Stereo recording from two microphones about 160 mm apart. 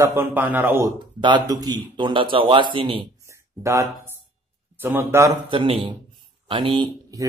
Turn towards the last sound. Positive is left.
turn(degrees=-25)  # may be behind; listen again after turning